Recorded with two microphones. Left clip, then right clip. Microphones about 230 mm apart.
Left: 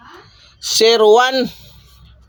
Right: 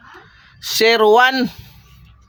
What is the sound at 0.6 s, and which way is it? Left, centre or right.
Speech, right.